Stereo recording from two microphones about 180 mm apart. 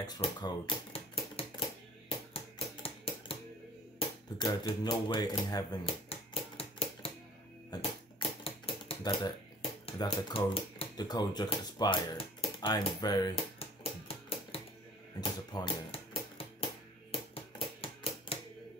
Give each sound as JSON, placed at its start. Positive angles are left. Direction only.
{"t": 0.2, "sound": "typewriter", "side_deg": 25}
{"t": 2.0, "sound": "music", "side_deg": 30}
{"t": 4.4, "sound": "speech", "side_deg": 25}
{"t": 7.7, "sound": "typewriter", "side_deg": 30}
{"t": 17.1, "sound": "a sound", "side_deg": 30}